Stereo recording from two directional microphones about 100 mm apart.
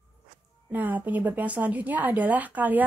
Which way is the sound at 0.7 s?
20° right (ahead or behind).